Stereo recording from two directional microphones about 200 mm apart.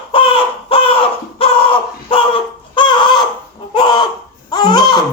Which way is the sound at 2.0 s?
25° left (ahead or behind).